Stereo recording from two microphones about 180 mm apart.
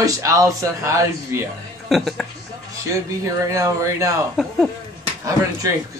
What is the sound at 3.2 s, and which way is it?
Speech, 15° right (ahead or behind).